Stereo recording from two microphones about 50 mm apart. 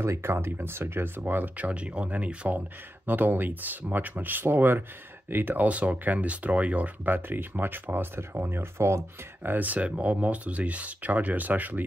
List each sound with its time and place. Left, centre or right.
0.0 s speech: right
3.1 s speech: right
7.1 s speech: right
9.7 s speech: right